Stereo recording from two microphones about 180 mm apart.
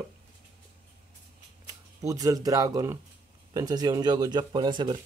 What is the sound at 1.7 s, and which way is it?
Speech, 20° right (ahead or behind).